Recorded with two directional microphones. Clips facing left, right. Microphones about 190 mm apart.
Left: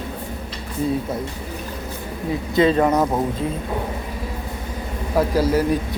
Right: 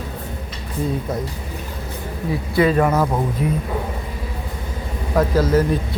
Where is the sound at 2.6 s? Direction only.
25° left (ahead or behind).